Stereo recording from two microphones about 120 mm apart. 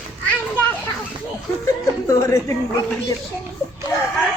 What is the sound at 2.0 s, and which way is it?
Speech, 25° left (ahead or behind).